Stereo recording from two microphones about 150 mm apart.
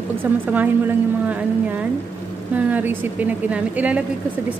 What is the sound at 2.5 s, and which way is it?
A woman's voice, 10° right (ahead or behind).